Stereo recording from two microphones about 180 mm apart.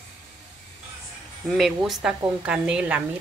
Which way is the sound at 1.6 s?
Centre (ahead or behind).